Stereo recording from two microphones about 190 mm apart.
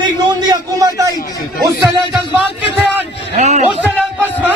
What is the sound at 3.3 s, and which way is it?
Speech, 35° right (ahead or behind).